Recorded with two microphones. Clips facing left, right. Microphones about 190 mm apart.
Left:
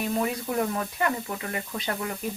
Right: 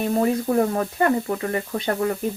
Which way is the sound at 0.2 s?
40° right (ahead or behind).